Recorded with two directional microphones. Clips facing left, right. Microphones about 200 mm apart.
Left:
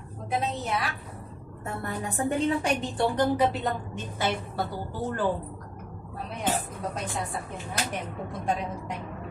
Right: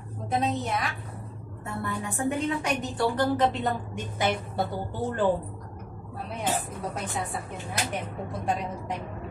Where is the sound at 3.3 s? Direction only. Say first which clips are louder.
Even; 10° left (ahead or behind).